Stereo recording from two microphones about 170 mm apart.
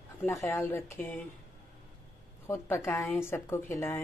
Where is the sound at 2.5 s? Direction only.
15° left (ahead or behind).